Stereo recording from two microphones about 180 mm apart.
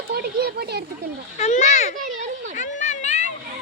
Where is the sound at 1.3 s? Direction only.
40° left (ahead or behind).